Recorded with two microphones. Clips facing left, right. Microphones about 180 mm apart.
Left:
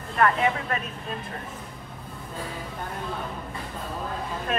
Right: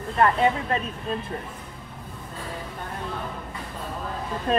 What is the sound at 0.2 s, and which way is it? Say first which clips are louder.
Speech: right 2 dB; 25° right (ahead or behind).